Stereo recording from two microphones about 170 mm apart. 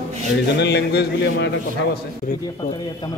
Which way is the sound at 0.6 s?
80° left.